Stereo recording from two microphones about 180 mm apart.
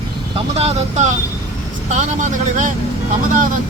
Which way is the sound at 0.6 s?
35° right (ahead or behind).